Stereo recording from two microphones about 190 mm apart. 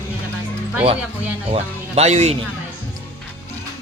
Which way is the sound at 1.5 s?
35° right (ahead or behind).